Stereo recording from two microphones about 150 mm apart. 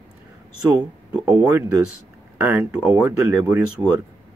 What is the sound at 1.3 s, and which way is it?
Speech, 25° right (ahead or behind).